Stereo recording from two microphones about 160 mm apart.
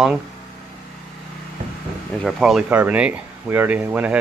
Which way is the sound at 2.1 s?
Centre (ahead or behind).